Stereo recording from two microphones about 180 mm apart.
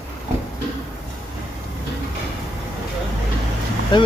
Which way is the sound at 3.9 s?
25° left (ahead or behind).